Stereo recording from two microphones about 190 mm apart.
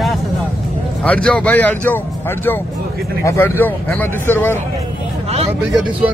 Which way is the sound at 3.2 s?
10° left (ahead or behind).